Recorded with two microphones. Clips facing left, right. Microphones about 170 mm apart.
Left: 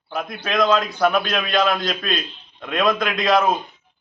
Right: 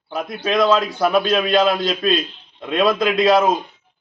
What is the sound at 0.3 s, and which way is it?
A man's voice, 30° right (ahead or behind).